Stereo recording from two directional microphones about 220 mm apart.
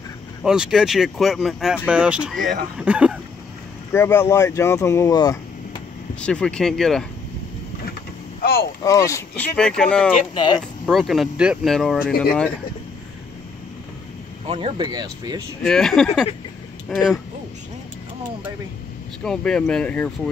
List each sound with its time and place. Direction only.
0.4 s speech: centre (ahead or behind)
3.9 s speech: 10° left (ahead or behind)
6.2 s speech: 5° left (ahead or behind)
8.4 s boat: 45° left (ahead or behind)
8.8 s speech: 15° left (ahead or behind)
10.3 s speech: 20° left (ahead or behind)
10.9 s speech: centre (ahead or behind)
14.5 s speech: 20° right (ahead or behind)
15.6 s speech: 5° left (ahead or behind)
19.2 s speech: 5° left (ahead or behind)